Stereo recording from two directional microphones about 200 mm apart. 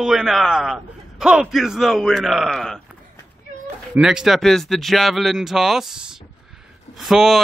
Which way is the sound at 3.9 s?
5° right (ahead or behind).